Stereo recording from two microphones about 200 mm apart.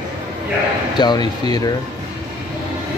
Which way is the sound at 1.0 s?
20° left (ahead or behind).